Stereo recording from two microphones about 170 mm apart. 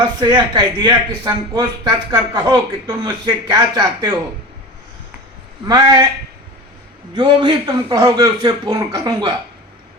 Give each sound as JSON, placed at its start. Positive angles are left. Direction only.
{"t": 0.2, "sound": "speech", "side_deg": -25}
{"t": 5.6, "sound": "speech", "side_deg": -20}
{"t": 7.2, "sound": "speech", "side_deg": -25}